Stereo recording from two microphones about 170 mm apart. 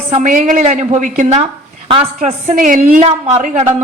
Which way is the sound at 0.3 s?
50° right (ahead or behind).